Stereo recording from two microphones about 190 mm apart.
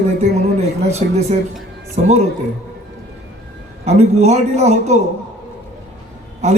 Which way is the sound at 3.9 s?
35° right (ahead or behind).